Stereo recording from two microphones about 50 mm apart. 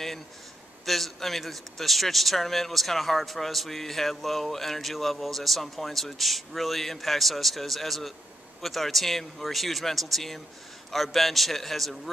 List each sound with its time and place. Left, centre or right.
0.8 s speech: centre